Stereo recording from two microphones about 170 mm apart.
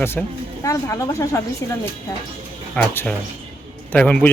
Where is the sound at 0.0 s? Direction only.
15° left (ahead or behind).